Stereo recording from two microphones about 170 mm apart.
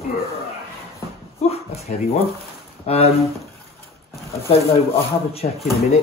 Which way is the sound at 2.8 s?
40° left (ahead or behind).